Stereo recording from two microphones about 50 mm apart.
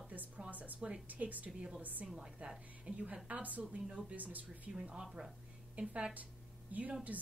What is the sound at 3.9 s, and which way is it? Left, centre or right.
Speech, centre.